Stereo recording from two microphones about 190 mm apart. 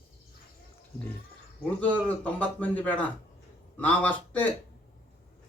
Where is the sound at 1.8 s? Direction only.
5° left (ahead or behind).